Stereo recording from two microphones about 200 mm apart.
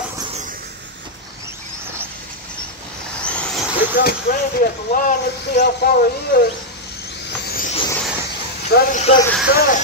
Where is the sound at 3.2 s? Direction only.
5° left (ahead or behind).